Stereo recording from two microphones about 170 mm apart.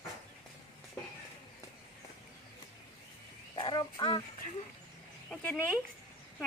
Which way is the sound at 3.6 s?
25° left (ahead or behind).